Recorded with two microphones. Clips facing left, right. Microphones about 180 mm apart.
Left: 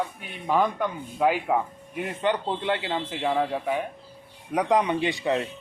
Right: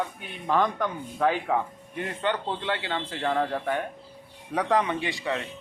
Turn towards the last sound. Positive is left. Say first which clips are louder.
# left 3 dB
turn(degrees=20)  # may be behind; listen again after turning